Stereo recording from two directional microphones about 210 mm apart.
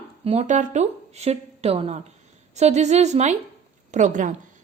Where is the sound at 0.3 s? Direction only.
35° right (ahead or behind).